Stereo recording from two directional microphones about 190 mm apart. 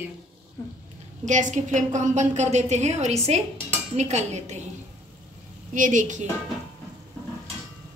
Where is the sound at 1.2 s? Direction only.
40° right (ahead or behind).